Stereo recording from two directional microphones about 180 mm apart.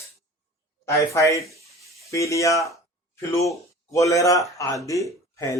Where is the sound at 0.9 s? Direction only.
15° left (ahead or behind).